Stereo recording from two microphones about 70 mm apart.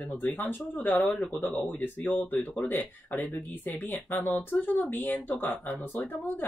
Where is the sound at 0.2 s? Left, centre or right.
Left.